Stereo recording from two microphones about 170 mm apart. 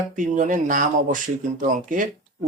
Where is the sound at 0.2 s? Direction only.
50° right (ahead or behind).